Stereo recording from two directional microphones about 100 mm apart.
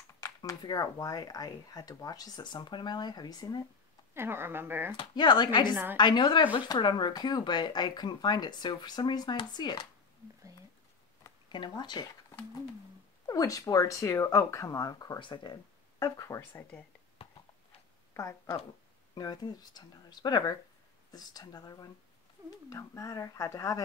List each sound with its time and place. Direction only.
0.2 s speech: 40° left (ahead or behind)
4.1 s speech: 25° right (ahead or behind)
4.9 s speech: 50° left (ahead or behind)
11.4 s speech: 50° left (ahead or behind)
13.3 s speech: 35° left (ahead or behind)
15.1 s speech: 55° left (ahead or behind); by 16.4 s 35° left (ahead or behind)
18.1 s speech: 30° left (ahead or behind)
19.1 s speech: 40° left (ahead or behind)